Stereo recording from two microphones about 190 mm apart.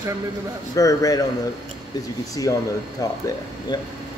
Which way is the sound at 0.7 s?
20° left (ahead or behind).